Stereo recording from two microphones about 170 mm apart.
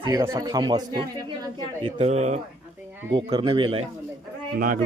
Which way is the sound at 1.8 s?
40° right (ahead or behind).